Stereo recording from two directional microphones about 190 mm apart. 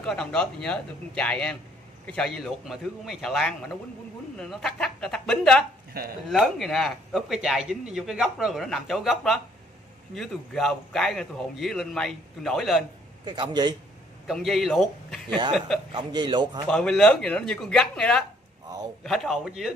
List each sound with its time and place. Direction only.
0.0 s a man's voice: 5° left (ahead or behind)
5.9 s speech: 55° right (ahead or behind)
6.3 s a man's voice: centre (ahead or behind)
13.2 s a man's voice: 25° right (ahead or behind)
14.2 s a man's voice: centre (ahead or behind)
15.9 s a man's voice: 25° right (ahead or behind)
16.6 s a man's voice: 5° left (ahead or behind)